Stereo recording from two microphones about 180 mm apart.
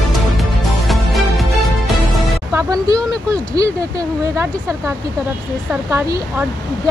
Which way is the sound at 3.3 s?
20° right (ahead or behind).